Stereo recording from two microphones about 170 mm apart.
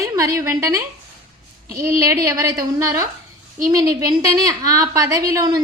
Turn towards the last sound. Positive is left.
turn(degrees=-20)  # may be behind; listen again after turning